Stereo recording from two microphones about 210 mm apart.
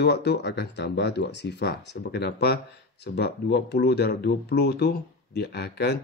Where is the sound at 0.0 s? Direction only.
55° left (ahead or behind).